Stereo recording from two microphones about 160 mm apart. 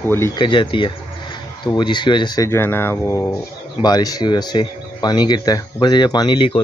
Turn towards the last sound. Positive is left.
turn(degrees=30)  # may be behind; listen again after turning